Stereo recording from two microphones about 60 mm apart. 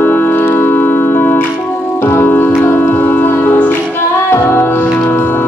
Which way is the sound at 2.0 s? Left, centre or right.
Left.